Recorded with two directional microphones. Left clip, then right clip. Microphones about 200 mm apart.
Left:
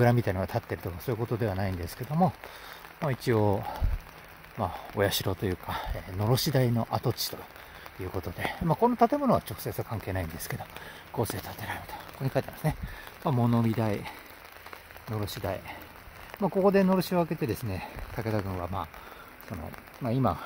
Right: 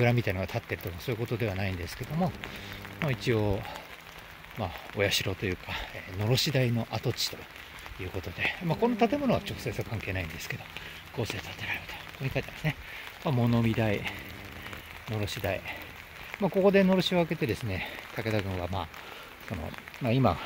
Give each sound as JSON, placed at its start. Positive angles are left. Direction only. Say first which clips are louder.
{"t": 0.0, "sound": "speech", "louder": "left 2 dB", "side_deg": 25}
{"t": 3.1, "sound": "speech", "louder": "left 3 dB", "side_deg": 25}
{"t": 15.1, "sound": "speech", "louder": "right 1 dB", "side_deg": 5}
{"t": 20.1, "sound": "speech", "louder": "right 2 dB", "side_deg": 0}